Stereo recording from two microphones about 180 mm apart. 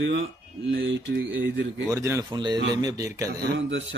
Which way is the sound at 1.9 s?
15° right (ahead or behind).